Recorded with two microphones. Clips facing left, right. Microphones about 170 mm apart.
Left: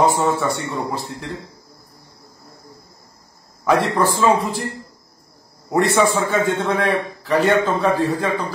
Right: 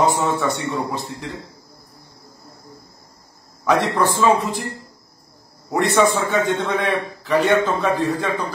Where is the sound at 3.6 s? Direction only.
Centre (ahead or behind).